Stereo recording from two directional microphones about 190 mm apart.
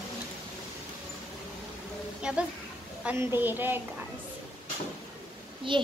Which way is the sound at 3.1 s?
10° right (ahead or behind).